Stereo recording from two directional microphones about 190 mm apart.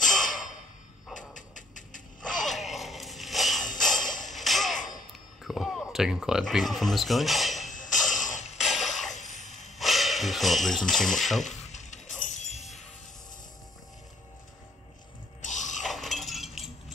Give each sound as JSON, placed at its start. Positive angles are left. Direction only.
{"t": 0.1, "sound": "a sound", "side_deg": 45}
{"t": 2.4, "sound": "music", "side_deg": 0}
{"t": 3.8, "sound": "mechanisms", "side_deg": 0}
{"t": 4.3, "sound": "music", "side_deg": 0}
{"t": 4.7, "sound": "a sound", "side_deg": 40}
{"t": 5.4, "sound": "speech", "side_deg": 0}
{"t": 8.1, "sound": "mechanisms", "side_deg": 40}
{"t": 8.5, "sound": "music", "side_deg": 0}
{"t": 9.5, "sound": "a sound", "side_deg": 0}
{"t": 11.4, "sound": "a sound", "side_deg": 40}
{"t": 12.2, "sound": "music", "side_deg": 40}
{"t": 15.4, "sound": "music", "side_deg": 40}
{"t": 15.8, "sound": "chink", "side_deg": 0}